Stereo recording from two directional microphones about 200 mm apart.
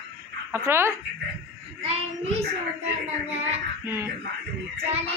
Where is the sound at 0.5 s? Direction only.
10° right (ahead or behind).